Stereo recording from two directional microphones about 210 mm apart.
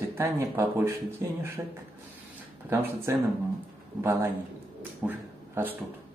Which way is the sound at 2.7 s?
10° right (ahead or behind).